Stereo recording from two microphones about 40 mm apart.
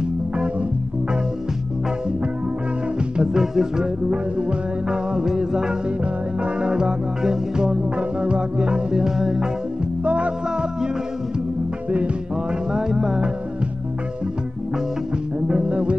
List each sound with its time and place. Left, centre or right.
3.2 s music: centre
3.8 s music: right
10.0 s music: right
12.7 s music: centre
15.4 s music: right